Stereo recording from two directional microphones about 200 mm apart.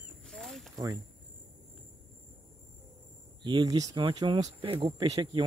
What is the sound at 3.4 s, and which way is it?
Speech, 20° right (ahead or behind).